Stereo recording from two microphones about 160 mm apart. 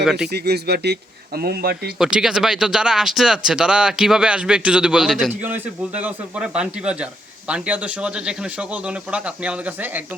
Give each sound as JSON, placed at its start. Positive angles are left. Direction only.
{"t": 0.0, "sound": "speech", "side_deg": 0}
{"t": 0.3, "sound": "speech", "side_deg": -90}
{"t": 1.4, "sound": "speech", "side_deg": -80}
{"t": 2.0, "sound": "a man's voice", "side_deg": -5}